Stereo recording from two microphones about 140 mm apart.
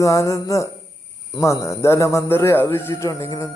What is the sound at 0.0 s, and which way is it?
A man's voice, 20° left (ahead or behind).